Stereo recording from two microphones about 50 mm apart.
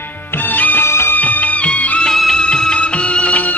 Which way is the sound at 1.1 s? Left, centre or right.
Left.